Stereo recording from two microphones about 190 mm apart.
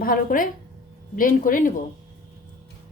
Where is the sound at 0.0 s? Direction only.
50° left (ahead or behind).